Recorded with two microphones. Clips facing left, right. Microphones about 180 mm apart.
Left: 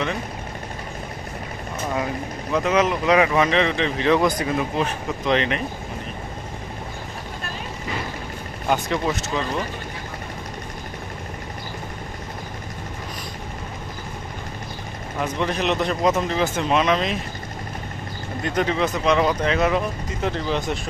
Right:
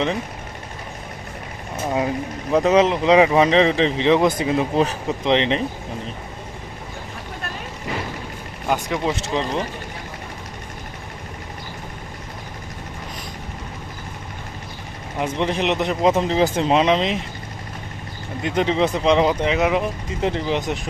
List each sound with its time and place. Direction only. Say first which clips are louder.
2.5 s speech: right 4 dB; 35° right (ahead or behind)
5.2 s speech: right 3 dB; 25° right (ahead or behind)
8.6 s speech: even; 5° right (ahead or behind)
9.2 s speech: right 2 dB; 30° right (ahead or behind)
15.2 s speech: right 2 dB; 25° right (ahead or behind)
18.4 s speech: right 3 dB; 20° right (ahead or behind)